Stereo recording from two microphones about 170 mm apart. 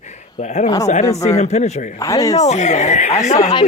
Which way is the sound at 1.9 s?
20° left (ahead or behind).